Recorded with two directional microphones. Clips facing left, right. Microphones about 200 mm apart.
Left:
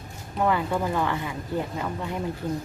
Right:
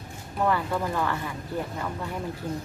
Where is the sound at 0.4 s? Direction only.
15° left (ahead or behind).